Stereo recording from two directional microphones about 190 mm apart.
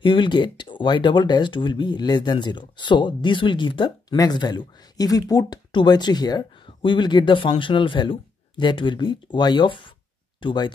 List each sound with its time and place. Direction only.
0.0 s speech: 25° left (ahead or behind)